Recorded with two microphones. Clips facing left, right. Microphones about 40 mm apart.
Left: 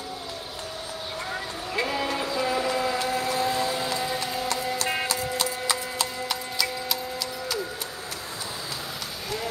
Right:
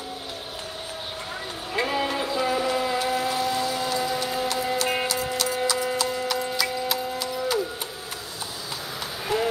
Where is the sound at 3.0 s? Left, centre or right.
Right.